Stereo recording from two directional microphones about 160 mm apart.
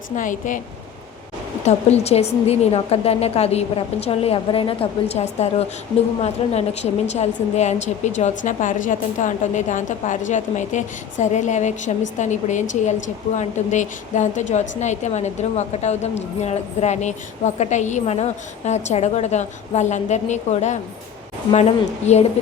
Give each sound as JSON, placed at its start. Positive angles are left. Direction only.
{"t": 0.2, "sound": "speech", "side_deg": 55}
{"t": 1.6, "sound": "a woman's voice", "side_deg": 40}